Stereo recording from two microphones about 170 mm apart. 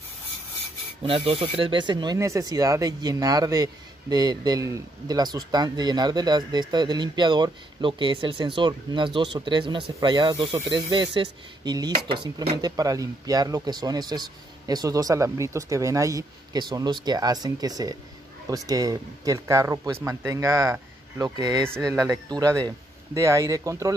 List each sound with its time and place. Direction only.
1.0 s speech: 30° right (ahead or behind)
10.9 s speech: 30° right (ahead or behind)